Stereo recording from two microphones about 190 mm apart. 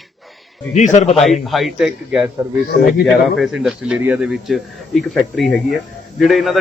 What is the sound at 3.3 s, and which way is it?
Speech, centre (ahead or behind).